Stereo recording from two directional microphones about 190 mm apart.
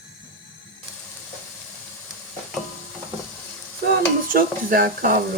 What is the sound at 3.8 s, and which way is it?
Stir, 50° right (ahead or behind).